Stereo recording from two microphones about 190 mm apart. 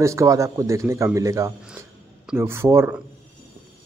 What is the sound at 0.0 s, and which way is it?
A man's voice, 15° right (ahead or behind).